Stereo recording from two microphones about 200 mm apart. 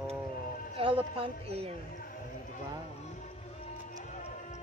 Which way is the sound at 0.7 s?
30° right (ahead or behind).